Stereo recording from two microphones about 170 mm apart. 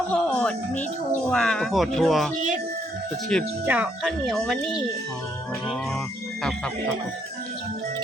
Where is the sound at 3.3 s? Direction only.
5° left (ahead or behind).